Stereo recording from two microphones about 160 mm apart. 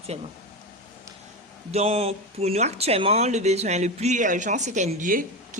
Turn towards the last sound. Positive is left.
turn(degrees=-55)  # may be behind; listen again after turning